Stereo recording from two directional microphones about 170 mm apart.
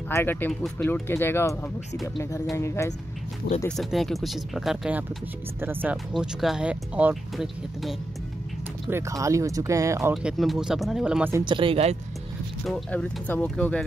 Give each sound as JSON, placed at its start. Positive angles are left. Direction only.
{"t": 0.1, "sound": "speech", "side_deg": 10}
{"t": 3.6, "sound": "speech", "side_deg": 0}
{"t": 8.9, "sound": "speech", "side_deg": -20}
{"t": 10.1, "sound": "speech", "side_deg": 0}
{"t": 11.4, "sound": "speech", "side_deg": -30}
{"t": 12.6, "sound": "speech", "side_deg": 10}